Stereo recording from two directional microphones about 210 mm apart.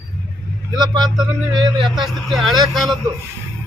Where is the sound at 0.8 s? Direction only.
20° right (ahead or behind).